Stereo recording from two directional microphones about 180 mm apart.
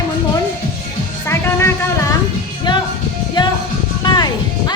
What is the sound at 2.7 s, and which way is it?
Music, 25° left (ahead or behind).